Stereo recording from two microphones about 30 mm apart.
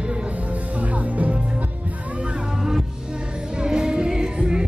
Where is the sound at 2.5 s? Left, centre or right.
Centre.